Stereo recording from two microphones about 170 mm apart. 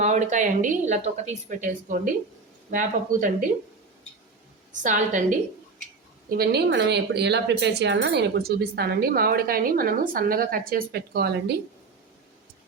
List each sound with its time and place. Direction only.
0.0 s a woman's voice: 45° right (ahead or behind)
4.8 s a woman's voice: 50° right (ahead or behind)
6.2 s a woman's voice: 65° right (ahead or behind)